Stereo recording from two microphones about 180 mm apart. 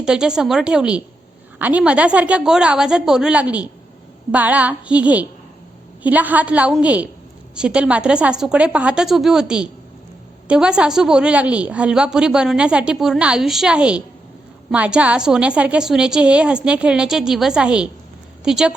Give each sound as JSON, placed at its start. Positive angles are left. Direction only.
{"t": 0.0, "sound": "a woman's voice", "side_deg": -5}